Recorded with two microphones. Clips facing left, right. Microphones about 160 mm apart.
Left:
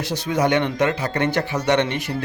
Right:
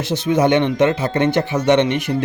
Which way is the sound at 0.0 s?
25° right (ahead or behind).